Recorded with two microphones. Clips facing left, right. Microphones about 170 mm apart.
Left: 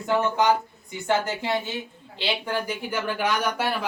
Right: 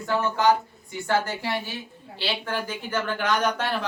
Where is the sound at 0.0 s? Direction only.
20° left (ahead or behind).